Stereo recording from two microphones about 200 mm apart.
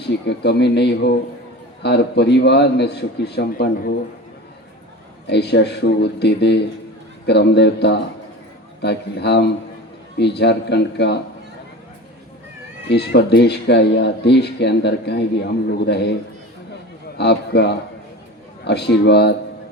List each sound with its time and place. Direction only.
0.3 s speech: 55° left (ahead or behind)
5.2 s speech: 55° left (ahead or behind)
12.9 s speech: 55° left (ahead or behind)
17.2 s speech: 55° left (ahead or behind)